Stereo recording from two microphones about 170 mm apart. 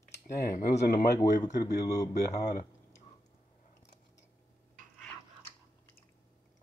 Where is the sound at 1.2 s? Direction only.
20° left (ahead or behind).